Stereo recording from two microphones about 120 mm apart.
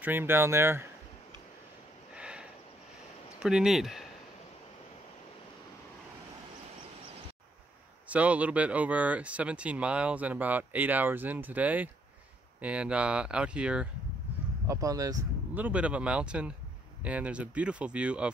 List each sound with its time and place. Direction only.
0.0 s speech: 20° right (ahead or behind)
2.1 s a sound: 10° right (ahead or behind)
3.4 s speech: 5° right (ahead or behind)
8.1 s speech: 10° right (ahead or behind)
14.7 s speech: 30° right (ahead or behind)
15.5 s speech: 10° right (ahead or behind)